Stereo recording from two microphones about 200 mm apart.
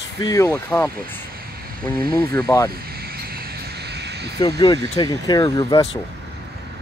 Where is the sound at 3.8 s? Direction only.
55° right (ahead or behind).